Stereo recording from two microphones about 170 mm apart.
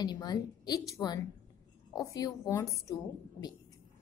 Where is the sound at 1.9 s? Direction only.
20° left (ahead or behind).